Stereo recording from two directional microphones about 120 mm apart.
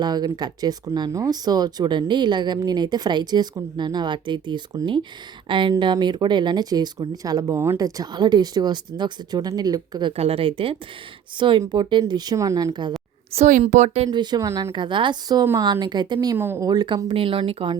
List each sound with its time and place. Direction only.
0.0 s speech: 35° right (ahead or behind)
10.1 s speech: 55° right (ahead or behind); by 12.9 s 35° right (ahead or behind)
13.3 s speech: 85° right
14.1 s speech: 40° right (ahead or behind)
14.4 s speech: 25° right (ahead or behind)
14.7 s speech: 40° right (ahead or behind)
16.4 s speech: 20° right (ahead or behind)
16.6 s speech: 35° right (ahead or behind)
17.1 s speech: 50° right (ahead or behind)